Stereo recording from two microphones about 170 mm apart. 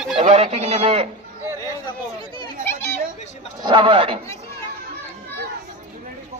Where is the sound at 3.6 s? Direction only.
25° right (ahead or behind).